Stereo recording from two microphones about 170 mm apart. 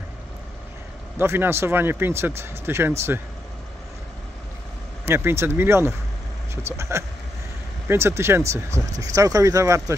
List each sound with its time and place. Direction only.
1.1 s speech: 15° right (ahead or behind)
5.0 s speech: 15° right (ahead or behind)